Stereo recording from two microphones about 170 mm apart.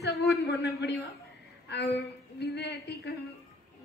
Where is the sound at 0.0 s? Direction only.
70° left (ahead or behind).